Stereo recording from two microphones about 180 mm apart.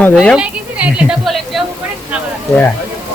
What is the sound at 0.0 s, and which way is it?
Speech, 5° left (ahead or behind).